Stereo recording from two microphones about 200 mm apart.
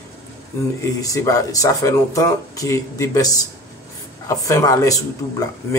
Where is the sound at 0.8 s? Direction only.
15° left (ahead or behind).